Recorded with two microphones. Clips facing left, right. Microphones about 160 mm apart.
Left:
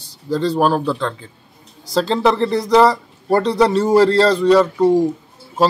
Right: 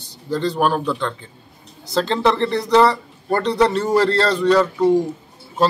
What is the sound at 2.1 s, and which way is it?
A man's voice, 5° left (ahead or behind).